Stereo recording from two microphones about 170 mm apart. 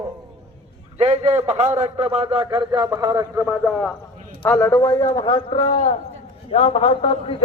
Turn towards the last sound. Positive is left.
turn(degrees=35)  # may be behind; listen again after turning